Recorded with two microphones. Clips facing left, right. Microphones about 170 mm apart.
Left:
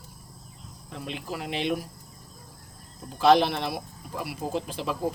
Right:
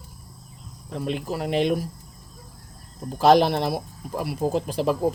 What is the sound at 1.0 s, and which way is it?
Speech, 40° right (ahead or behind).